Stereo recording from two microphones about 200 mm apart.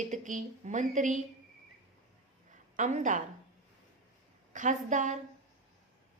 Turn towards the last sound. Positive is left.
turn(degrees=-40)  # may be behind; listen again after turning